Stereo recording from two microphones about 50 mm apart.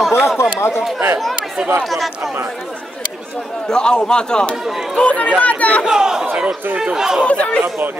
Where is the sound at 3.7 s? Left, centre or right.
Centre.